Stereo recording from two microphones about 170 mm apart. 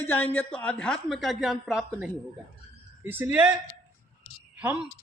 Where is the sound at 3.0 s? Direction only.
10° right (ahead or behind).